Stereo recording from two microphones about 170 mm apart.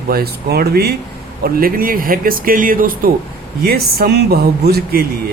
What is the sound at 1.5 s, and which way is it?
Speech, 55° right (ahead or behind).